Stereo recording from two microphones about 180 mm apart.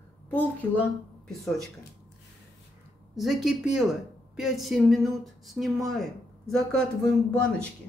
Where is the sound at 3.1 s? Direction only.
Centre (ahead or behind).